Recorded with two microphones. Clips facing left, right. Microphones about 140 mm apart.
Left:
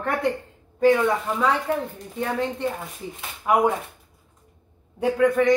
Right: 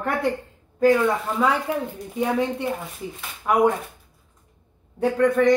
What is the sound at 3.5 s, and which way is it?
Speech, 10° left (ahead or behind).